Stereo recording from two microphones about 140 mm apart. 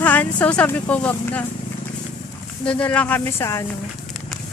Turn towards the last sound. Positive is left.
turn(degrees=20)  # may be behind; listen again after turning